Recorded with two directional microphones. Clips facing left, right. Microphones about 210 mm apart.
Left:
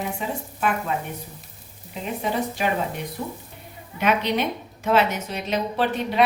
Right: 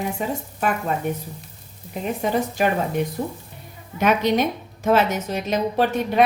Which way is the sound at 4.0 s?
45° right (ahead or behind).